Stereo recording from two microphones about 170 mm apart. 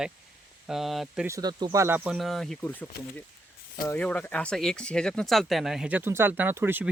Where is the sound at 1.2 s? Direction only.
20° right (ahead or behind).